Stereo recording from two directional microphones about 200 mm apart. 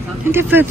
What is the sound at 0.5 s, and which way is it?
Speech, 10° right (ahead or behind).